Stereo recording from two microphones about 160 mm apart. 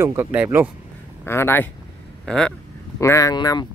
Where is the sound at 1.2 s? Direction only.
15° left (ahead or behind).